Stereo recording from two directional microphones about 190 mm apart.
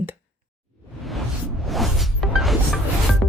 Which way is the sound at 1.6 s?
Centre (ahead or behind).